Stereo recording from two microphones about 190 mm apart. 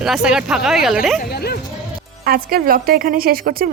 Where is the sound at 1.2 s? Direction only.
55° left (ahead or behind).